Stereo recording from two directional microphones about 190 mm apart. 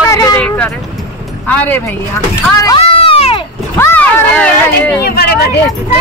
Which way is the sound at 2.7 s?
30° left (ahead or behind).